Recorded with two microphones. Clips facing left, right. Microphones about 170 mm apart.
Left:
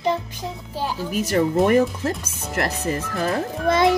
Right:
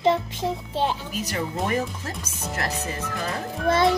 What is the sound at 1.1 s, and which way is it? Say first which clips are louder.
Speech: left 8 dB; 50° left (ahead or behind).